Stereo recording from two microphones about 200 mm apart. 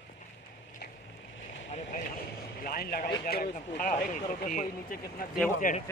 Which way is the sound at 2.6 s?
45° left (ahead or behind).